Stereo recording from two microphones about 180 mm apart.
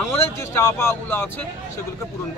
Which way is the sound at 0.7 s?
10° left (ahead or behind).